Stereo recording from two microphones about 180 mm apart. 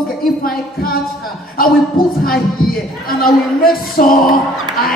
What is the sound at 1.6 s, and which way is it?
Speech, 55° left (ahead or behind).